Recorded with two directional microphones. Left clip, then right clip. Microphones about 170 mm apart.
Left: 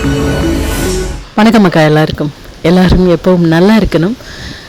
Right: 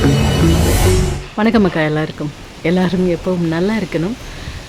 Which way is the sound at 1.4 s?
45° left (ahead or behind).